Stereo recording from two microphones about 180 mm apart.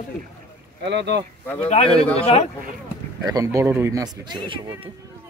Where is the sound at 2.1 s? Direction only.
35° left (ahead or behind).